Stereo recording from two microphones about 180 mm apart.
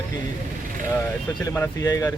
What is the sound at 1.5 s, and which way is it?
Speech, 15° left (ahead or behind).